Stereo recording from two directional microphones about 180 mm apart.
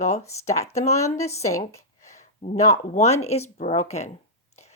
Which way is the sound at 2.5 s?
40° left (ahead or behind).